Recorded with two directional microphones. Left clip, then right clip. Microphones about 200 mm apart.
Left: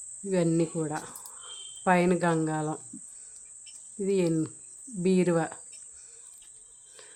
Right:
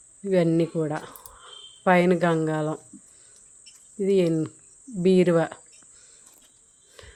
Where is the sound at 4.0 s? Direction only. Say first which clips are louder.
Right 5 dB; 10° right (ahead or behind).